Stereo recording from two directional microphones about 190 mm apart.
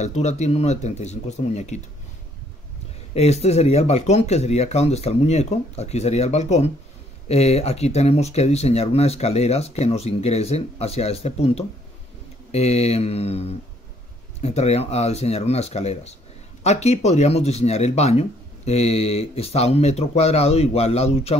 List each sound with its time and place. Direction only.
0.0 s speech: 35° left (ahead or behind)
3.2 s speech: 35° left (ahead or behind)